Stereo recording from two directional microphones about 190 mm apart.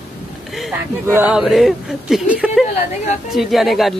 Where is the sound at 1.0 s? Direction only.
10° right (ahead or behind).